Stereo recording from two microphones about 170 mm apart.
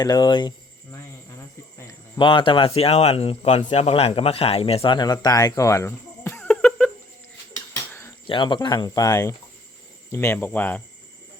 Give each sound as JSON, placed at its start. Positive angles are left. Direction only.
{"t": 0.0, "sound": "speech", "side_deg": 25}
{"t": 8.3, "sound": "speech", "side_deg": 25}